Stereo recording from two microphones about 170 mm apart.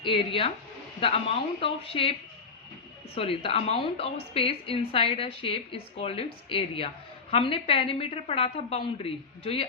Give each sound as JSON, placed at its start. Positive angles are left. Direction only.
{"t": 0.0, "sound": "a woman's voice", "side_deg": 30}
{"t": 3.2, "sound": "a woman's voice", "side_deg": 35}